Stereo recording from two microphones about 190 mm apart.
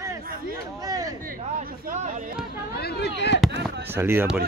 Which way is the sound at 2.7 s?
55° left (ahead or behind).